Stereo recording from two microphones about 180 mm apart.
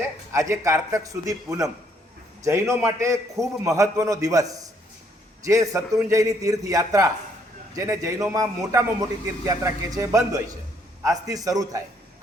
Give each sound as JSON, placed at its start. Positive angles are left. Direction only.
{"t": 0.3, "sound": "a man's voice", "side_deg": -15}